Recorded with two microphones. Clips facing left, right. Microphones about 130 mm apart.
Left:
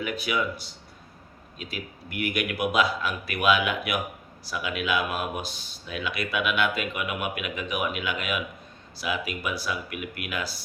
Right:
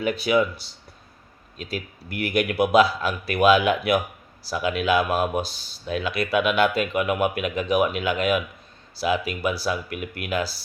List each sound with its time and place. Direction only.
0.0 s speech: 30° right (ahead or behind)